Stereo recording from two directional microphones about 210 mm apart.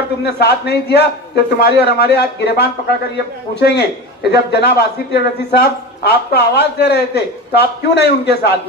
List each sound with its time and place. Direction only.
0.2 s a man's voice: 50° left (ahead or behind)